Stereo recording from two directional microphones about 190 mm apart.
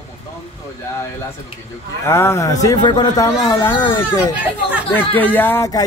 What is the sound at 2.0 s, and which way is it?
A man's voice, 15° left (ahead or behind).